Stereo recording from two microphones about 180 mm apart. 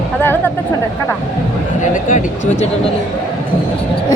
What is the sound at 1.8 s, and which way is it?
Speech, 45° left (ahead or behind).